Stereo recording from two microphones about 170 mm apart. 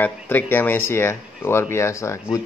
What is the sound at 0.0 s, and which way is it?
A man's voice, 10° left (ahead or behind).